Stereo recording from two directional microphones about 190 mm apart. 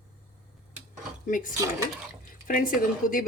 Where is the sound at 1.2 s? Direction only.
45° left (ahead or behind).